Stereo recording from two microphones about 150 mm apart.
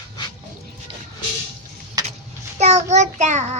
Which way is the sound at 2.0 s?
25° right (ahead or behind).